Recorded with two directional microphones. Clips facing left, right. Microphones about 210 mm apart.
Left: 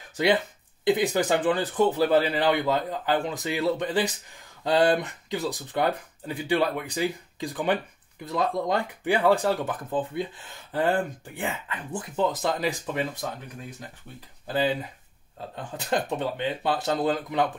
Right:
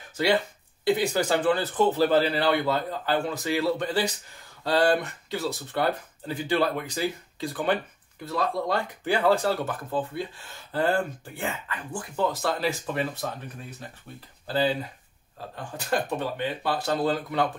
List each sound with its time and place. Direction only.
0.1 s speech: 20° left (ahead or behind)
15.5 s speech: 20° left (ahead or behind)